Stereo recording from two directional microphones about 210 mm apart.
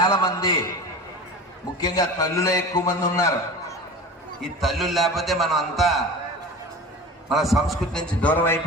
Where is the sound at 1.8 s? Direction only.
15° left (ahead or behind).